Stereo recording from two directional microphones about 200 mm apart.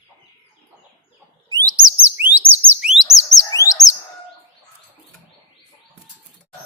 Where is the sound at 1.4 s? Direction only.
20° right (ahead or behind).